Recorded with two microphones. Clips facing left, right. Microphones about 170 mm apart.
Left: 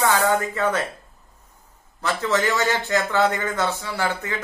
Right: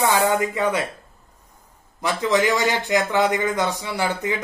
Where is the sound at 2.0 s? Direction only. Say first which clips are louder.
Right 2 dB; 15° right (ahead or behind).